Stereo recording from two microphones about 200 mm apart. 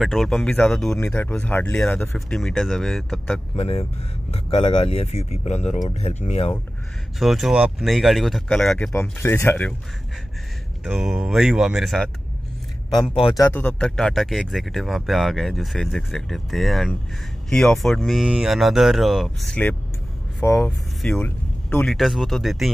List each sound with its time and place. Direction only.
0.0 s speech: centre (ahead or behind)
3.5 s speech: 30° left (ahead or behind)
7.2 s speech: centre (ahead or behind)
10.8 s speech: centre (ahead or behind)
13.4 s speech: 10° left (ahead or behind)
20.4 s speech: 15° left (ahead or behind)